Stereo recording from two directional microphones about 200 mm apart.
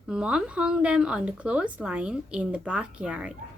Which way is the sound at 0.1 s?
5° right (ahead or behind).